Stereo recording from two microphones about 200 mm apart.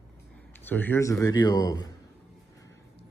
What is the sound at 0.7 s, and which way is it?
Speech, 10° left (ahead or behind).